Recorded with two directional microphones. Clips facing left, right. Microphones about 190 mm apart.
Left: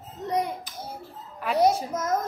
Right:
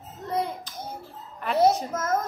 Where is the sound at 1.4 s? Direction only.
15° left (ahead or behind).